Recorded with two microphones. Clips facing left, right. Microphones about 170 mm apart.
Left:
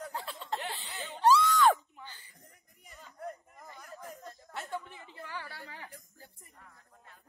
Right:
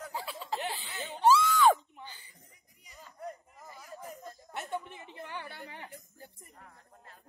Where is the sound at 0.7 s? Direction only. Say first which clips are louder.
Right 2 dB; centre (ahead or behind).